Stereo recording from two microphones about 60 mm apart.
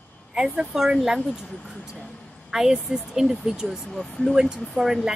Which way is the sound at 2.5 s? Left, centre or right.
Centre.